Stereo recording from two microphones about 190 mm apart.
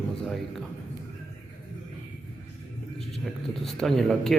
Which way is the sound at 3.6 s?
Centre (ahead or behind).